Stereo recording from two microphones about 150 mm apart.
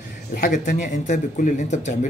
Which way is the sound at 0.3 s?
55° left (ahead or behind).